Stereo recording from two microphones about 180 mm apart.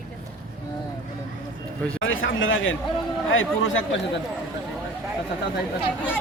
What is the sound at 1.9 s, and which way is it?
A man's voice, 90° left.